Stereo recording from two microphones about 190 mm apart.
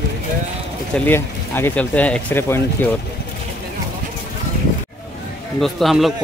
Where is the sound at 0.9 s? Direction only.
10° left (ahead or behind).